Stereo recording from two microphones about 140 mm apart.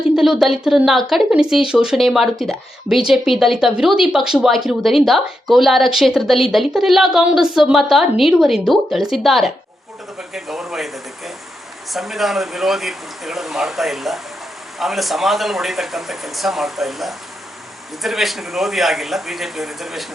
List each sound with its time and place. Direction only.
0.1 s speech: centre (ahead or behind)
10.2 s a sound: centre (ahead or behind)
11.9 s speech: centre (ahead or behind)